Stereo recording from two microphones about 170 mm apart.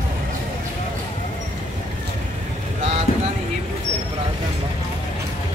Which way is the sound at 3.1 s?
40° left (ahead or behind).